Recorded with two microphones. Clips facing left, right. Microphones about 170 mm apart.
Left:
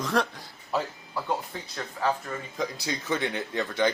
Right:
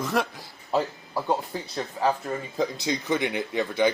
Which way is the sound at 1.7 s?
30° right (ahead or behind).